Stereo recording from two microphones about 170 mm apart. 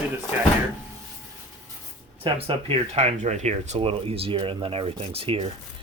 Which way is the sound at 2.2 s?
35° right (ahead or behind).